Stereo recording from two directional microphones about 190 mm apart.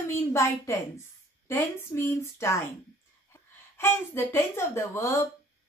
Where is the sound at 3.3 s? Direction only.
10° left (ahead or behind).